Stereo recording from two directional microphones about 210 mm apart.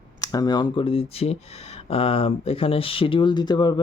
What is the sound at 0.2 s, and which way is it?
Speech, 20° left (ahead or behind).